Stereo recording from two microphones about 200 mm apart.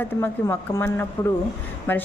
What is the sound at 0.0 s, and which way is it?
A woman's voice, 10° left (ahead or behind).